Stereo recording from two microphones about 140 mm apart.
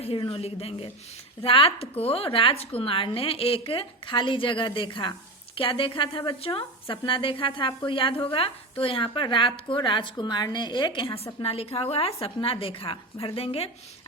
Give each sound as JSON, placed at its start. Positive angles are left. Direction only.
{"t": 0.0, "sound": "a woman's voice", "side_deg": 45}